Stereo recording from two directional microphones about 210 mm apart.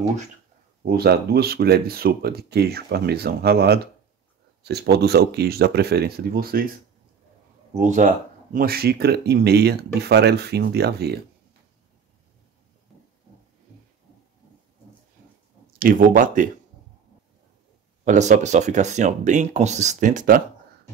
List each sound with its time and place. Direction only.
0.8 s speech: 50° right (ahead or behind)
7.7 s speech: 35° right (ahead or behind)
8.5 s speech: 45° right (ahead or behind)
15.8 s speech: 40° right (ahead or behind)
18.0 s speech: 35° right (ahead or behind)